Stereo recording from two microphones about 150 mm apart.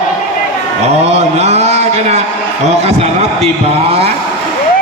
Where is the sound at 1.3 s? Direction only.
45° right (ahead or behind).